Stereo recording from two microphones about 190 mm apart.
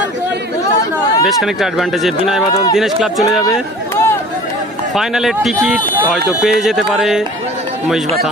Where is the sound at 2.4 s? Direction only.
20° left (ahead or behind).